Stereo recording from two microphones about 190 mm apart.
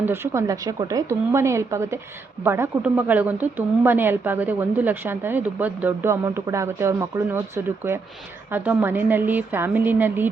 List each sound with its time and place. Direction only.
0.0 s speech: 10° right (ahead or behind)